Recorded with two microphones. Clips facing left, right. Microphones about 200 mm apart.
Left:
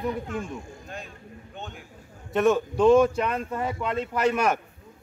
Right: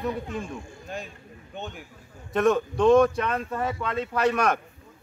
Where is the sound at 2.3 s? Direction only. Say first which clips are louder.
Even; centre (ahead or behind).